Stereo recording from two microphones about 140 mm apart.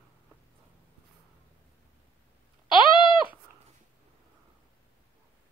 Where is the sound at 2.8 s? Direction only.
35° left (ahead or behind).